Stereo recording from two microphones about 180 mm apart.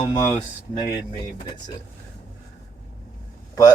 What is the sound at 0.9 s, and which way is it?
Speech, 25° left (ahead or behind).